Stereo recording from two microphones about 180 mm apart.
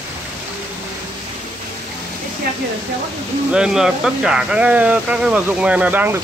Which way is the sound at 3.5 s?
5° right (ahead or behind).